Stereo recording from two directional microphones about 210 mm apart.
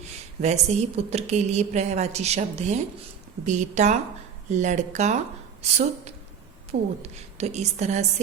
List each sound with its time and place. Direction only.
0.4 s a woman's voice: 30° right (ahead or behind)